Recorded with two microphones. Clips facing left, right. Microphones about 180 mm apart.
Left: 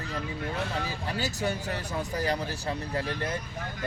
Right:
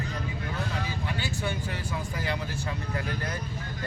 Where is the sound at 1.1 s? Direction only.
40° left (ahead or behind).